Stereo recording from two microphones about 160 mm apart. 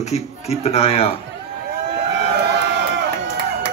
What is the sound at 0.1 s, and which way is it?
Speech, 40° left (ahead or behind).